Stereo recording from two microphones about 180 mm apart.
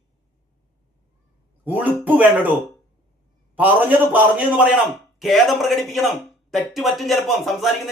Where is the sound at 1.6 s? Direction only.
10° right (ahead or behind).